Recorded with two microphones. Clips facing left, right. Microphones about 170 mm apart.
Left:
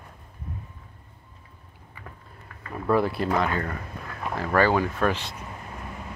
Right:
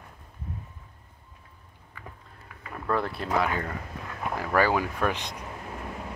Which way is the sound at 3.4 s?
10° right (ahead or behind).